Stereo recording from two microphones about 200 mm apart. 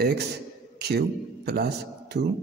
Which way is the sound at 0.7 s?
55° right (ahead or behind).